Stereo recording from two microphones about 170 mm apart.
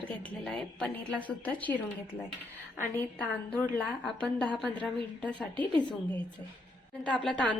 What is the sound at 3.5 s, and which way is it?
A woman's voice, 5° left (ahead or behind).